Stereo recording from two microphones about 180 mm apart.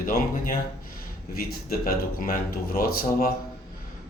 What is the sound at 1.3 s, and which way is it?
Speech, 55° left (ahead or behind).